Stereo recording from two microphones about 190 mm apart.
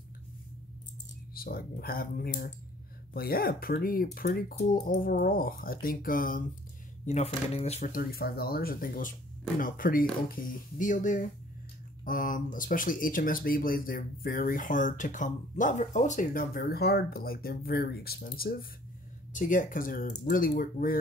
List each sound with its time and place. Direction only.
1.3 s speech: 50° left (ahead or behind)
7.1 s speech: 35° left (ahead or behind)